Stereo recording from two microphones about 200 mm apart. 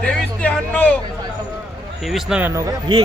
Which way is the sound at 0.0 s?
5° left (ahead or behind).